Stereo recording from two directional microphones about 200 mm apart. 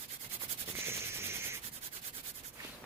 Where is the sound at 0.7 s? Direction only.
10° right (ahead or behind).